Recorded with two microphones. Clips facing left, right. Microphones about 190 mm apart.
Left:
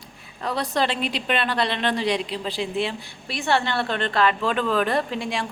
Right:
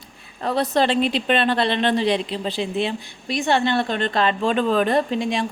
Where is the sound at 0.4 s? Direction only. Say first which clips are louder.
Right 4 dB; 25° right (ahead or behind).